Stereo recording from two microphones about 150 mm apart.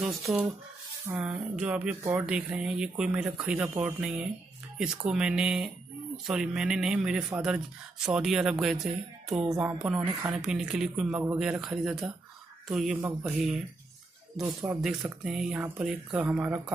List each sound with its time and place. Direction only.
0.0 s speech: 5° right (ahead or behind)
9.5 s music: 20° right (ahead or behind)
9.8 s speech: 5° right (ahead or behind)
12.9 s speech: 15° right (ahead or behind)
14.4 s speech: 5° right (ahead or behind)